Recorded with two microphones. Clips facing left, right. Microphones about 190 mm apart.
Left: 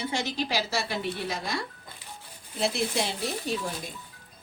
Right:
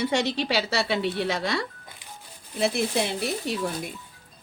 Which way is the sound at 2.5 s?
60° right (ahead or behind).